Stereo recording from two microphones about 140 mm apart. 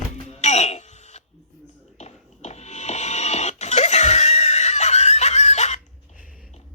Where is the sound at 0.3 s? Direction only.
50° left (ahead or behind).